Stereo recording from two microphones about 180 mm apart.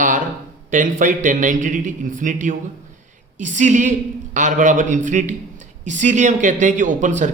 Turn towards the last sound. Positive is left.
turn(degrees=-45)  # may be behind; listen again after turning